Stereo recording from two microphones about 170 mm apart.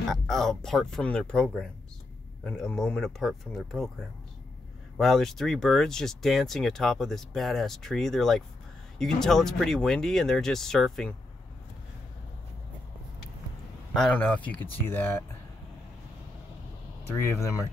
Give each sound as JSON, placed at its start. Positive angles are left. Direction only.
{"t": 0.1, "sound": "speech", "side_deg": 0}
{"t": 4.9, "sound": "speech", "side_deg": 0}
{"t": 13.9, "sound": "speech", "side_deg": 5}
{"t": 17.1, "sound": "speech", "side_deg": 20}